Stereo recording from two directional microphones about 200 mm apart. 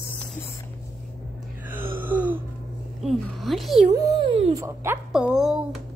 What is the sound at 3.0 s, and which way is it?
Speech, centre (ahead or behind).